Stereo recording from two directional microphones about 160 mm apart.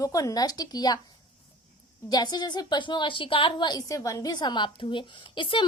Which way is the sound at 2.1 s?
25° left (ahead or behind).